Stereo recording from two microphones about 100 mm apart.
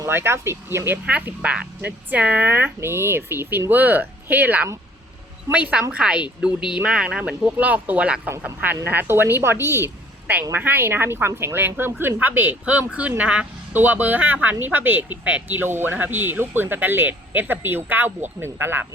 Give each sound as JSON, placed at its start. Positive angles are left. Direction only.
{"t": 0.0, "sound": "speech", "side_deg": -25}